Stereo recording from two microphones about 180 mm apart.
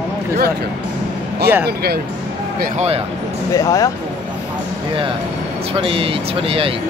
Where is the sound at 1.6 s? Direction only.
60° right (ahead or behind).